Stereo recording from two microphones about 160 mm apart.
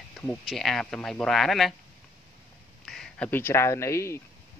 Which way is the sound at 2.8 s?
5° left (ahead or behind).